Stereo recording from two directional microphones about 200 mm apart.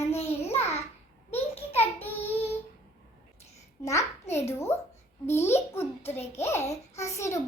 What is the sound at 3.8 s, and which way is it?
Speech, 15° left (ahead or behind).